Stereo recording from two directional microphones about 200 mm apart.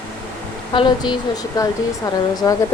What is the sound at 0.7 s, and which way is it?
Speech, 25° left (ahead or behind).